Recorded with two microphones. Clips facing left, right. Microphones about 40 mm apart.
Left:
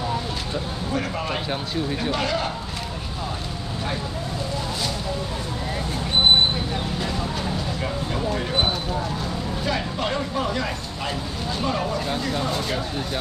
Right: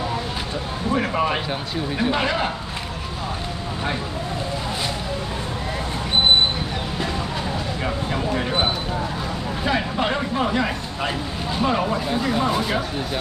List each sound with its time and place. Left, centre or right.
0.9 s speech: right
9.7 s speech: right